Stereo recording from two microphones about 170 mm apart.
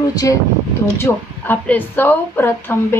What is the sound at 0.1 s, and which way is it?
A woman's voice, 20° left (ahead or behind).